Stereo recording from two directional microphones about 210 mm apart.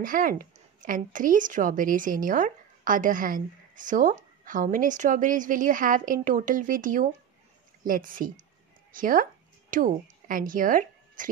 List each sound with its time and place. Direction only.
0.0 s a woman's voice: 40° right (ahead or behind)